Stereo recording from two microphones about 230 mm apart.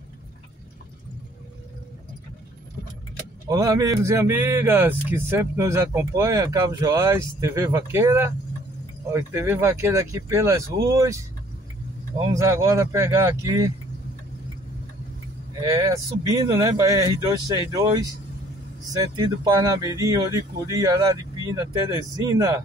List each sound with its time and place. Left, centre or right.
3.4 s speech: centre
12.4 s speech: centre
15.6 s speech: centre